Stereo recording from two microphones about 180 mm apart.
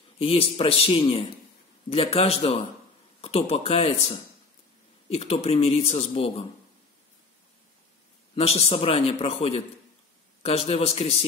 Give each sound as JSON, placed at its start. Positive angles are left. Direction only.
{"t": 0.2, "sound": "speech", "side_deg": 30}
{"t": 8.4, "sound": "speech", "side_deg": 35}